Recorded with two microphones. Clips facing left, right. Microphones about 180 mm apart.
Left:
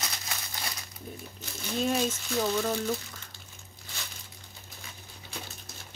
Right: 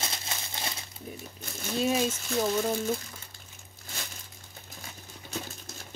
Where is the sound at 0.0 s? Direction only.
25° right (ahead or behind).